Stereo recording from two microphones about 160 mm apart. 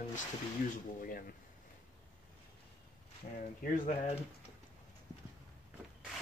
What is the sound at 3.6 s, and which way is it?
Speech, 60° left (ahead or behind).